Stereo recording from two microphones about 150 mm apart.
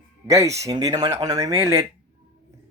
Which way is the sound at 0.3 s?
20° right (ahead or behind).